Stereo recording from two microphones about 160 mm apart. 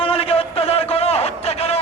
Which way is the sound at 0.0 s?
35° left (ahead or behind).